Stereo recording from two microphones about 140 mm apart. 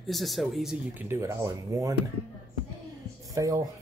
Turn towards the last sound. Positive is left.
turn(degrees=-25)  # may be behind; listen again after turning